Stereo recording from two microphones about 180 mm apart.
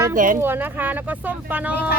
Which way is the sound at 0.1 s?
50° right (ahead or behind).